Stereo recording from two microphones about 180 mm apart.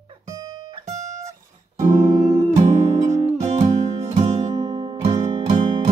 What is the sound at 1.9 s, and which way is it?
Music, 20° right (ahead or behind).